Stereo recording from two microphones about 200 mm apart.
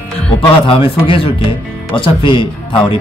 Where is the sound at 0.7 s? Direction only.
25° left (ahead or behind).